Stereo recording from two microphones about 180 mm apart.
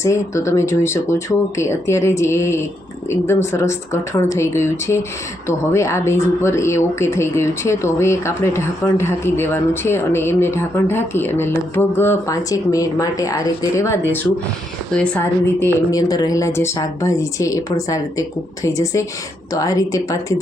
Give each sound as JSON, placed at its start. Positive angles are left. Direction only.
{"t": 0.0, "sound": "a woman's voice", "side_deg": 15}
{"t": 15.6, "sound": "speech", "side_deg": 20}